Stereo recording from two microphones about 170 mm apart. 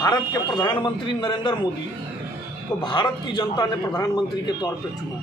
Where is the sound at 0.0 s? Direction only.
25° left (ahead or behind).